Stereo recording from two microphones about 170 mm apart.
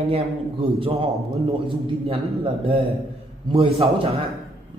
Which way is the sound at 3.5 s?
35° right (ahead or behind).